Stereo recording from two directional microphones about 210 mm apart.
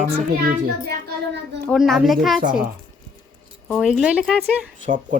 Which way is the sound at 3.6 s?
Centre (ahead or behind).